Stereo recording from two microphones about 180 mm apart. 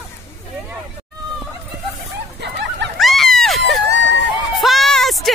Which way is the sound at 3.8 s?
75° right (ahead or behind).